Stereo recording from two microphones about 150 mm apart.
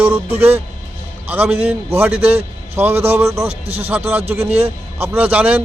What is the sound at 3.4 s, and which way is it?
Speech, 40° right (ahead or behind).